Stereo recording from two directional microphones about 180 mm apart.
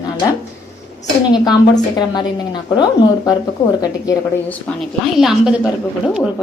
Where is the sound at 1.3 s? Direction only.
20° left (ahead or behind).